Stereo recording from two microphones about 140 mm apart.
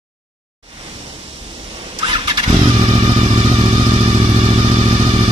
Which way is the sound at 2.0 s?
40° right (ahead or behind).